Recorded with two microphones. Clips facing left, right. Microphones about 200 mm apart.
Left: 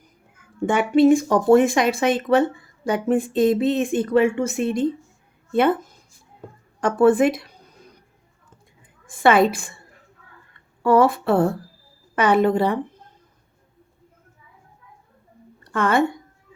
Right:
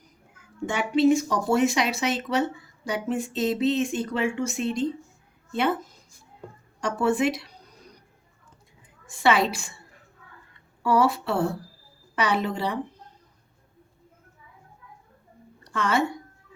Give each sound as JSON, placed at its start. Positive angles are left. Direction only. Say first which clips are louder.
{"t": 0.6, "sound": "speech", "louder": "left 5 dB", "side_deg": 55}
{"t": 9.0, "sound": "speech", "louder": "left 6 dB", "side_deg": 50}
{"t": 10.8, "sound": "speech", "louder": "left 6 dB", "side_deg": 50}
{"t": 15.7, "sound": "speech", "louder": "left 5 dB", "side_deg": 55}